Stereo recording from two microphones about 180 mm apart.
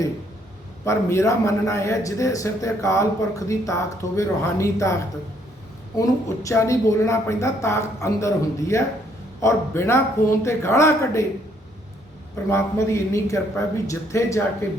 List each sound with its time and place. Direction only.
0.9 s a man's voice: 15° left (ahead or behind)
6.0 s a man's voice: 15° left (ahead or behind)
12.5 s a man's voice: 15° left (ahead or behind)